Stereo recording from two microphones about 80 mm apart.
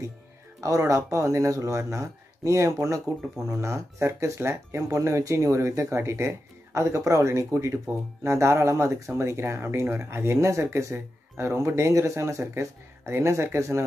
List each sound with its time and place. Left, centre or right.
0.6 s speech: right